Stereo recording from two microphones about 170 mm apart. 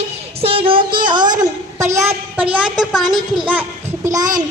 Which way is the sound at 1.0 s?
25° right (ahead or behind).